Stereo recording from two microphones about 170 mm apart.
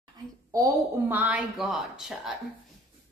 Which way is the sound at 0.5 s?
15° right (ahead or behind).